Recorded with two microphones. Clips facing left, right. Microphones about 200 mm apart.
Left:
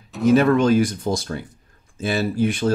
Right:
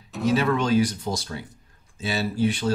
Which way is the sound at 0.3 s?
50° left (ahead or behind).